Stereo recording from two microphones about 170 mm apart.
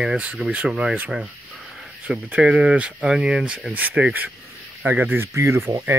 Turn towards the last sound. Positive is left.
turn(degrees=-20)  # may be behind; listen again after turning